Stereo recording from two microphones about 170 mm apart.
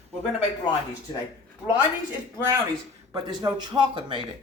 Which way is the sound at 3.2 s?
25° right (ahead or behind).